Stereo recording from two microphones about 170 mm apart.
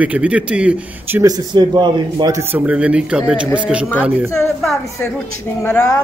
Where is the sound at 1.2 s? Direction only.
25° right (ahead or behind); by 3.9 s 5° right (ahead or behind).